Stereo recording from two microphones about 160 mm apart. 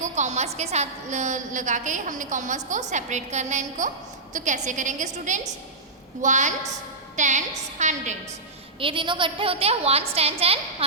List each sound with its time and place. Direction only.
0.0 s a woman's voice: 45° right (ahead or behind)
8.8 s a woman's voice: 30° right (ahead or behind)